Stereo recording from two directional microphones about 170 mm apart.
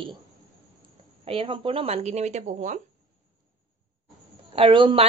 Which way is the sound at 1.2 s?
35° right (ahead or behind).